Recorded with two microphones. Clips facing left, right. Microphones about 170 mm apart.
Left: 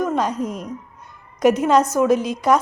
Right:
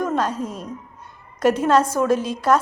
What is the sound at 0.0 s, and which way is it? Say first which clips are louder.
A woman's voice: left 1 dB; 10° left (ahead or behind).